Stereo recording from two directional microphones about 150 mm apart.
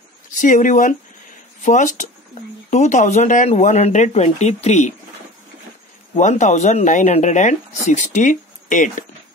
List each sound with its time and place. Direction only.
0.4 s speech: 60° left (ahead or behind)
6.1 s speech: 55° left (ahead or behind)